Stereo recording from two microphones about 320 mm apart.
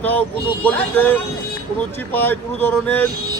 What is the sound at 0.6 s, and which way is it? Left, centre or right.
A man's voice, centre.